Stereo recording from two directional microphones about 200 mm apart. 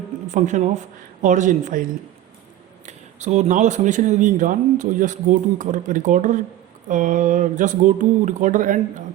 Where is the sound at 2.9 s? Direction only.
35° right (ahead or behind).